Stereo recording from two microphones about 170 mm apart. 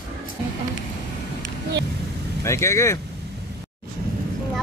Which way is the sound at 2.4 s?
15° left (ahead or behind).